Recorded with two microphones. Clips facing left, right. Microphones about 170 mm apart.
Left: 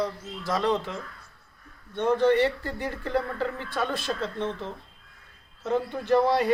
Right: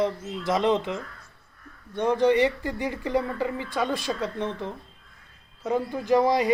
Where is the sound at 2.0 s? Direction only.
15° right (ahead or behind).